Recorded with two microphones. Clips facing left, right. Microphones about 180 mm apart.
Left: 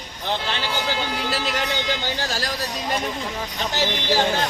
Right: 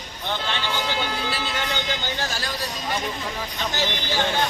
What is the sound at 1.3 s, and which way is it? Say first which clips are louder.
Speech: left 3 dB; 40° left (ahead or behind).